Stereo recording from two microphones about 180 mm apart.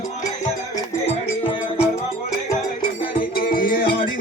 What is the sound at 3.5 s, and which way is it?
Music, 50° left (ahead or behind).